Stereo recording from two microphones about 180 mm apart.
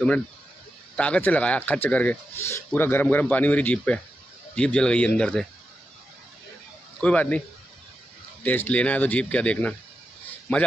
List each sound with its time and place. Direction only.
0.9 s speech: 5° left (ahead or behind)
7.0 s speech: 5° left (ahead or behind)
8.5 s speech: 10° left (ahead or behind)